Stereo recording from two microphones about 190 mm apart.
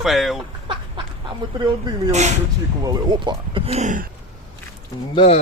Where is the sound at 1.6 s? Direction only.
20° right (ahead or behind); by 4.1 s 40° right (ahead or behind).